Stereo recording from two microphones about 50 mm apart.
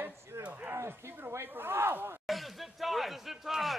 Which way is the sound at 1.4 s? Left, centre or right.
Right.